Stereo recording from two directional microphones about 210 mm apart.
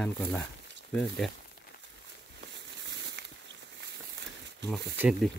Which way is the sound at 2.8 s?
55° right (ahead or behind).